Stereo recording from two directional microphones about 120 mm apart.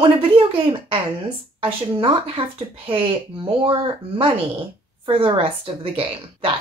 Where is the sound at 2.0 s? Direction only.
50° right (ahead or behind).